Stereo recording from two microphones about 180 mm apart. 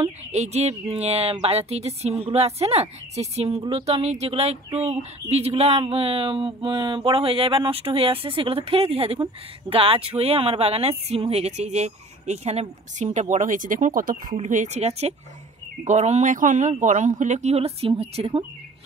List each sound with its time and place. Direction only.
0.0 s speech: 40° right (ahead or behind)